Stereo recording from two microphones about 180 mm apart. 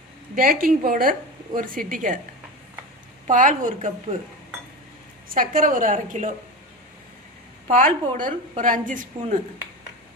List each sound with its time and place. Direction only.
0.3 s a woman's voice: 55° right (ahead or behind)
3.2 s a woman's voice: 45° right (ahead or behind)
5.3 s a woman's voice: 50° right (ahead or behind)
7.7 s a woman's voice: 45° right (ahead or behind)